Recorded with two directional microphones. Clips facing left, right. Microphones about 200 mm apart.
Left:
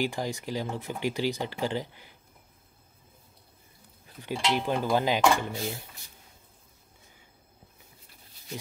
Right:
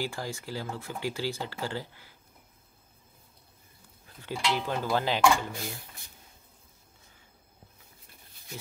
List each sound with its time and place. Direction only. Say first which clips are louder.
0.0 s speech: left 4 dB; 20° left (ahead or behind)
4.2 s speech: left 2 dB; 20° left (ahead or behind)